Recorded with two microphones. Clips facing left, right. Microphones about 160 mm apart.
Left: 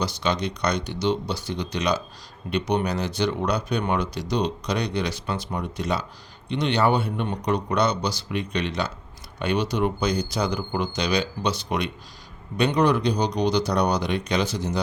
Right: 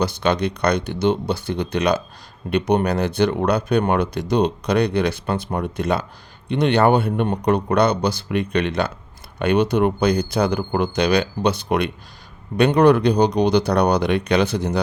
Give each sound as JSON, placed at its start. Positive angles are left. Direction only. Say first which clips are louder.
{"t": 0.0, "sound": "speech", "louder": "right 6 dB", "side_deg": -55}